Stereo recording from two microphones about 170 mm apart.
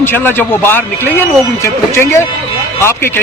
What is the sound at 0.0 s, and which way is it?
A man's voice, 10° left (ahead or behind).